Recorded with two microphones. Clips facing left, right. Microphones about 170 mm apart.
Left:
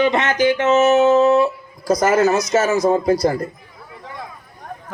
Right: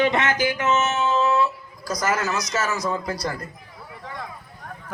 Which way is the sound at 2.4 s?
50° left (ahead or behind).